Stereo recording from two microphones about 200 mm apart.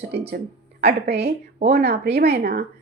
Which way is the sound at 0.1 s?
55° right (ahead or behind).